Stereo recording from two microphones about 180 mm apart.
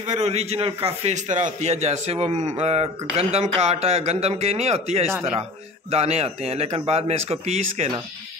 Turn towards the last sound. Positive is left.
turn(degrees=-35)  # may be behind; listen again after turning